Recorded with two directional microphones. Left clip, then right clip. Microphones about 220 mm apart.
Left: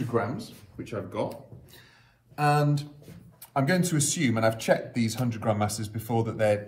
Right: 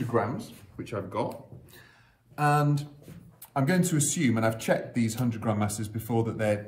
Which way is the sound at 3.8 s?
Centre (ahead or behind).